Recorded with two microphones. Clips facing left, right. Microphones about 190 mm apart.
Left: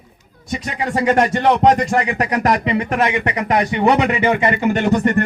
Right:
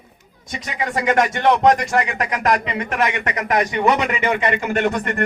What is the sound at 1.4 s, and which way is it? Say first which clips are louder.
Speech: even; 25° left (ahead or behind).